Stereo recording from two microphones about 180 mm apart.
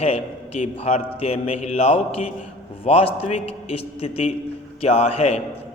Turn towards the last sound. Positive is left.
turn(degrees=35)  # may be behind; listen again after turning